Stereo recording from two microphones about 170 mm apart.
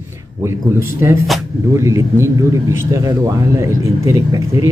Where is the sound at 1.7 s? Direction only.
15° right (ahead or behind).